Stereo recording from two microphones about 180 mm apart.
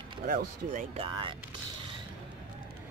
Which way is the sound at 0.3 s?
45° right (ahead or behind).